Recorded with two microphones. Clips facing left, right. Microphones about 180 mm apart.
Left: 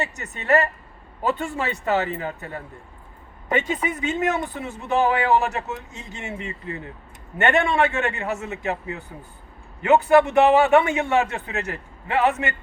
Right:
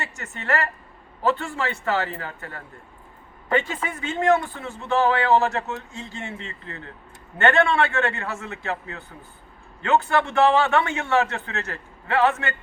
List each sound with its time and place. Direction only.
0.0 s a man's voice: 15° left (ahead or behind)